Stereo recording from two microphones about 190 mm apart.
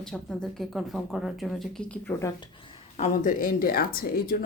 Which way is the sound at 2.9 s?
40° left (ahead or behind).